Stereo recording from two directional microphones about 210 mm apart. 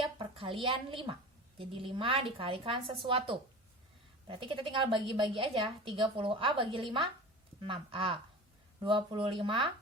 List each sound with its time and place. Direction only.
0.0 s a woman's voice: 25° right (ahead or behind)